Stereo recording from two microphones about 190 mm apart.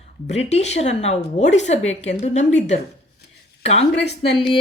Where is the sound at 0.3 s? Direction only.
35° left (ahead or behind).